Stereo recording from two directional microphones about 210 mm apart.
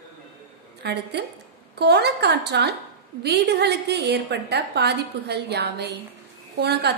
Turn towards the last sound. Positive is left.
turn(degrees=-50)  # may be behind; listen again after turning